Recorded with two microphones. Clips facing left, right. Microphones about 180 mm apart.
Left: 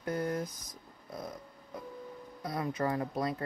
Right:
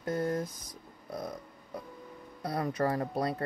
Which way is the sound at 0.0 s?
25° right (ahead or behind).